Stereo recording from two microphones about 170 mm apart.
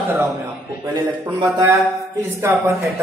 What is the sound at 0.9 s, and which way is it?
Speech, 25° right (ahead or behind).